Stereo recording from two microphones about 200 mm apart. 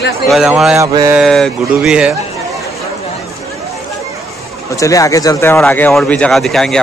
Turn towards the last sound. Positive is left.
turn(degrees=0)  # may be behind; listen again after turning